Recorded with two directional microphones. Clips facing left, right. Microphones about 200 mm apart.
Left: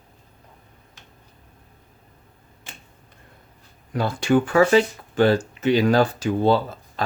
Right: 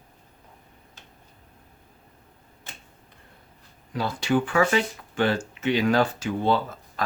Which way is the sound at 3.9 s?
50° left (ahead or behind).